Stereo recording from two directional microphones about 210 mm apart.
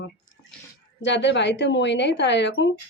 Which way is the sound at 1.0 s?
60° left (ahead or behind).